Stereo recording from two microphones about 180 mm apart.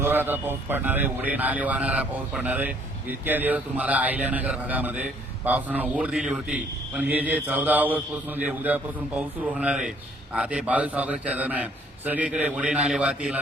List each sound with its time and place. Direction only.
0.0 s a man's voice: 10° right (ahead or behind)